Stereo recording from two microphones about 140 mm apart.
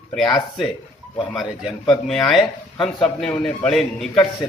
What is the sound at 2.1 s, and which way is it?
A man's voice, centre (ahead or behind).